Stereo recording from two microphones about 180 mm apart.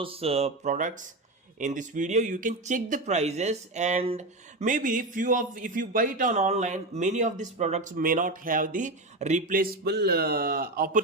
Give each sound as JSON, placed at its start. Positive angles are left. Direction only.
{"t": 0.0, "sound": "speech", "side_deg": -30}
{"t": 4.6, "sound": "a man's voice", "side_deg": -45}